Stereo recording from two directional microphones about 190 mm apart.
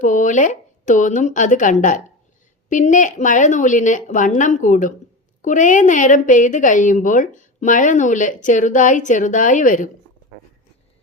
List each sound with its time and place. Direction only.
0.0 s a woman's voice: 40° left (ahead or behind)